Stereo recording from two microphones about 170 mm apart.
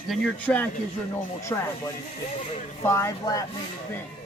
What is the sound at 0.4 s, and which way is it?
Speech, 10° left (ahead or behind).